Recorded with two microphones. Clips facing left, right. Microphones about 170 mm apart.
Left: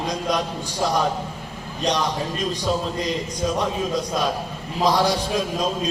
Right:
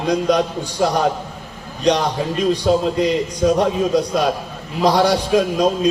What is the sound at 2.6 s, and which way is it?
Speech, 65° right (ahead or behind).